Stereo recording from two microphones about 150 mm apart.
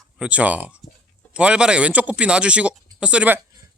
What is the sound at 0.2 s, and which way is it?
A man's voice, 10° right (ahead or behind).